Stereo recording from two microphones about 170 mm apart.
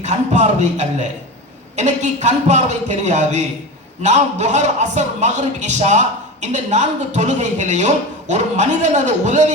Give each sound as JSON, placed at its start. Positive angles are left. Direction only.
{"t": 0.0, "sound": "a man's voice", "side_deg": -40}